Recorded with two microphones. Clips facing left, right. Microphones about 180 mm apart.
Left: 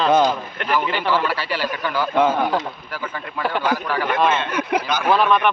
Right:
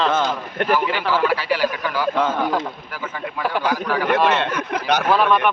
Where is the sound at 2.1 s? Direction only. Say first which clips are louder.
Left 6 dB; 5° left (ahead or behind).